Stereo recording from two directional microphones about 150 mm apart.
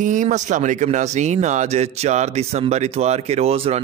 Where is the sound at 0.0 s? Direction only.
55° right (ahead or behind).